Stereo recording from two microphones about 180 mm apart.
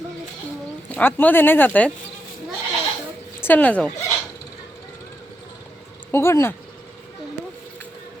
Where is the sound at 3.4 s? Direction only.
10° left (ahead or behind).